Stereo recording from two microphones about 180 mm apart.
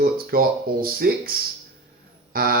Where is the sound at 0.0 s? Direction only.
55° right (ahead or behind).